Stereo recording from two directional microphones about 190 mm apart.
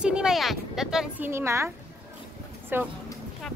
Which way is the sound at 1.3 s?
15° right (ahead or behind).